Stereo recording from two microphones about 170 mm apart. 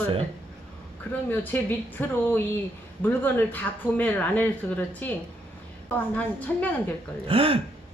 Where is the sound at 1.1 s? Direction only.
10° left (ahead or behind).